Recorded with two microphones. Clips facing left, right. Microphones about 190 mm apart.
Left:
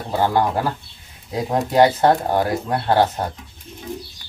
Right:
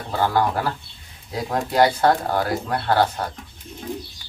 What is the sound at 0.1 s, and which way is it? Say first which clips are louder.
Speech: left 2 dB; 20° left (ahead or behind).